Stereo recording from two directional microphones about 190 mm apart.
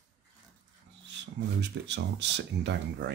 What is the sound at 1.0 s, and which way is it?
Speech, 65° right (ahead or behind).